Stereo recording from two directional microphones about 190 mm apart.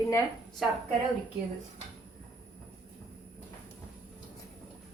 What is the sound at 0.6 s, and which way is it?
Speech, centre (ahead or behind).